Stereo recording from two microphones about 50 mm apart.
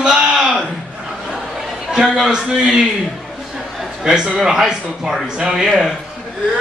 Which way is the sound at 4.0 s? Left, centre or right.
Centre.